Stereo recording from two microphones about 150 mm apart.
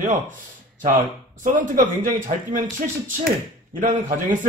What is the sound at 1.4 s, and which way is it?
Speech, 60° right (ahead or behind).